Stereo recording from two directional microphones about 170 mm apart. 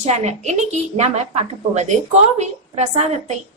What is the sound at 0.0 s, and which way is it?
A woman's voice, 40° right (ahead or behind).